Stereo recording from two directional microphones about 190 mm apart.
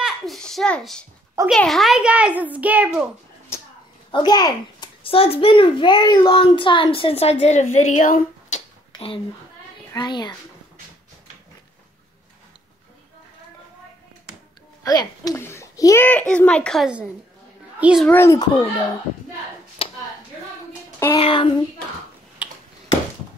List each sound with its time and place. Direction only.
0.0 s a sound: centre (ahead or behind)
1.5 s a child's voice: centre (ahead or behind)
4.1 s a child's voice: 20° left (ahead or behind); by 8.6 s 40° left (ahead or behind)
8.9 s a woman's voice: 30° left (ahead or behind)
14.9 s a child's voice: 20° left (ahead or behind); by 18.0 s 5° right (ahead or behind)
18.0 s a child's voice: 10° left (ahead or behind)
19.8 s a sound: 30° left (ahead or behind)
21.1 s a child's voice: 25° left (ahead or behind)